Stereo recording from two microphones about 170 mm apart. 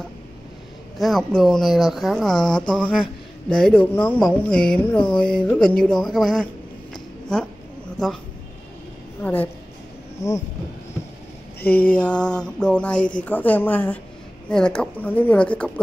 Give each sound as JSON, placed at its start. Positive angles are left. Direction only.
{"t": 0.9, "sound": "speech", "side_deg": 0}
{"t": 9.2, "sound": "speech", "side_deg": 10}
{"t": 10.2, "sound": "a sound", "side_deg": 20}
{"t": 11.6, "sound": "speech", "side_deg": 10}